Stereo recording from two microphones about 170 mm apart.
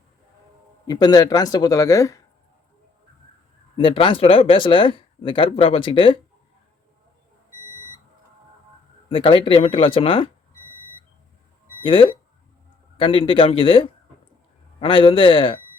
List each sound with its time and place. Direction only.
0.9 s speech: 25° left (ahead or behind)
3.8 s speech: 30° left (ahead or behind)
9.0 s speech: 35° left (ahead or behind)
11.8 s speech: 30° left (ahead or behind)